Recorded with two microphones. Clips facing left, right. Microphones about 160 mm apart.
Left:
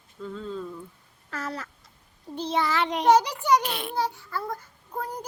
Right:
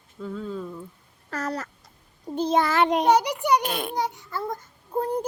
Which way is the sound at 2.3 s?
45° right (ahead or behind).